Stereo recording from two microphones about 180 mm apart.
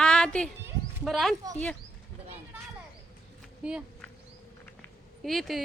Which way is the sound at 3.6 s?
5° right (ahead or behind).